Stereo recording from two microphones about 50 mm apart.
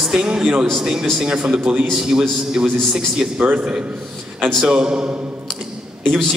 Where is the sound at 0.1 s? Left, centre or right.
Centre.